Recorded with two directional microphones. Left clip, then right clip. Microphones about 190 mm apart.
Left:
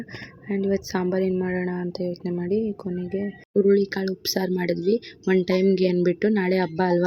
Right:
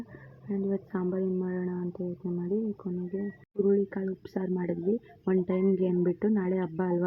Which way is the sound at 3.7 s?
25° left (ahead or behind).